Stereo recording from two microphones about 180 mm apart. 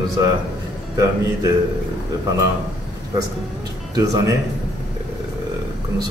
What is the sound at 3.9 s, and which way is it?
Speech, 20° right (ahead or behind).